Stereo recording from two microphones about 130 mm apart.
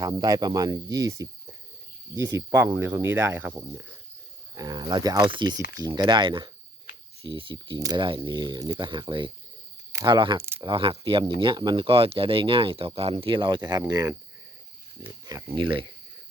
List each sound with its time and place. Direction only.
0.0 s cricket: 30° right (ahead or behind)
2.3 s speech: 25° right (ahead or behind)
4.5 s speech: 30° right (ahead or behind)
15.3 s speech: 30° right (ahead or behind)